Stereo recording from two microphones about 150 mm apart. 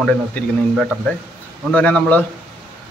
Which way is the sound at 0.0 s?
5° left (ahead or behind).